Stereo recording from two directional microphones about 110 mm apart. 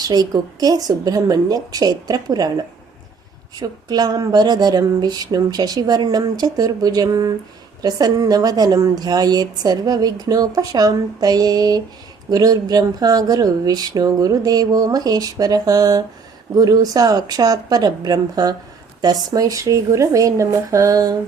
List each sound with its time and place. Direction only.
0.0 s speech: 35° right (ahead or behind)